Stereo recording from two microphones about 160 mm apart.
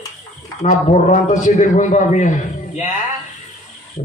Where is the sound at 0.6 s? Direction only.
50° left (ahead or behind).